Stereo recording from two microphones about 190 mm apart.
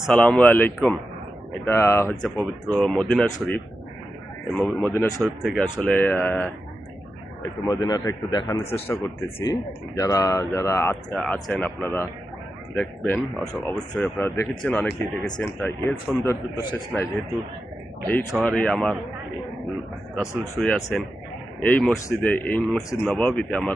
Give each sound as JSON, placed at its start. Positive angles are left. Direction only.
{"t": 0.0, "sound": "speech", "side_deg": 5}
{"t": 5.2, "sound": "speech", "side_deg": 0}
{"t": 7.7, "sound": "speech", "side_deg": 20}
{"t": 18.3, "sound": "speech", "side_deg": 5}
{"t": 20.1, "sound": "speech", "side_deg": 5}